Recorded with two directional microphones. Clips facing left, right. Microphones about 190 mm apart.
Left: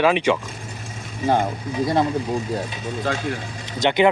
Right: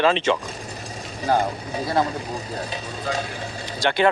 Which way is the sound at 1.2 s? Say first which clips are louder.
Left 2 dB; 35° right (ahead or behind).